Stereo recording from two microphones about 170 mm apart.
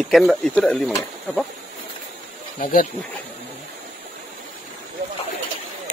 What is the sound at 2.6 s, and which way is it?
Speech, 55° left (ahead or behind).